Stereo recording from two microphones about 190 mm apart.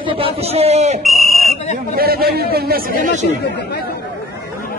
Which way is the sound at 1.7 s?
50° right (ahead or behind).